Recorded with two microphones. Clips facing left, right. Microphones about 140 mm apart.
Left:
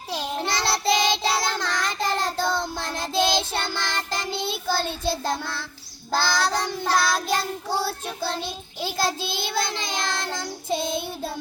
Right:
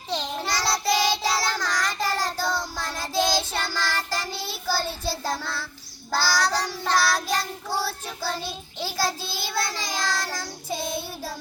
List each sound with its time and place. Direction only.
0.4 s child singing: 25° left (ahead or behind)